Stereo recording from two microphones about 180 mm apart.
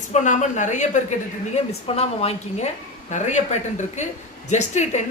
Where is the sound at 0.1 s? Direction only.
40° left (ahead or behind).